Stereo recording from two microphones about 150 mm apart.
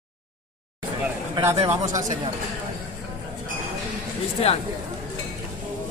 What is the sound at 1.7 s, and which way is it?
Speech, 20° right (ahead or behind).